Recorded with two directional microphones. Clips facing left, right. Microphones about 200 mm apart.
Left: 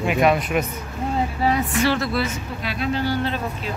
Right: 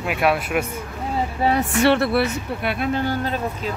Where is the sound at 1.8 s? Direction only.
60° right (ahead or behind).